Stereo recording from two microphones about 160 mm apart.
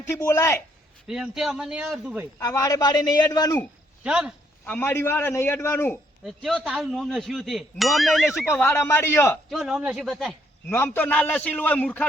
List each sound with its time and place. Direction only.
0.0 s a man's voice: 15° left (ahead or behind)
1.0 s speech: 5° right (ahead or behind)
2.4 s a man's voice: 20° left (ahead or behind)
4.0 s speech: 5° right (ahead or behind)
4.6 s a man's voice: 10° left (ahead or behind)
6.2 s speech: centre (ahead or behind)
8.4 s a man's voice: 10° left (ahead or behind)
9.5 s speech: centre (ahead or behind)
10.7 s a man's voice: 10° left (ahead or behind)